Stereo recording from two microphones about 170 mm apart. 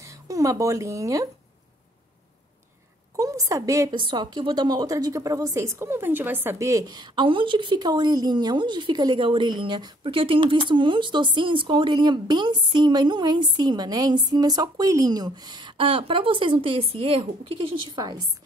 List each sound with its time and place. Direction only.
0.0 s speech: 20° right (ahead or behind)
3.2 s a woman's voice: 20° right (ahead or behind)